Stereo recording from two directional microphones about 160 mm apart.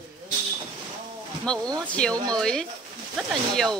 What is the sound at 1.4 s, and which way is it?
Speech, 5° left (ahead or behind).